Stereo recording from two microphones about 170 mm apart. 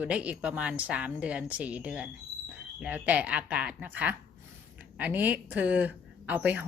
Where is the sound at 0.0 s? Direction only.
10° right (ahead or behind).